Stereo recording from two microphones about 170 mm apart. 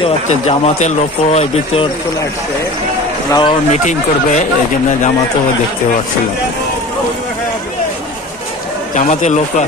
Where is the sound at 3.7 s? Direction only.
45° left (ahead or behind).